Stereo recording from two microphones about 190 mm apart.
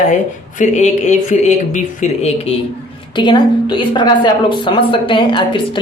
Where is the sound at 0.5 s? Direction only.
40° left (ahead or behind).